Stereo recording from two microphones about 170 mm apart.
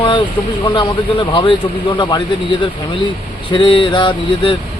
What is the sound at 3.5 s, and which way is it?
Speech, 30° left (ahead or behind).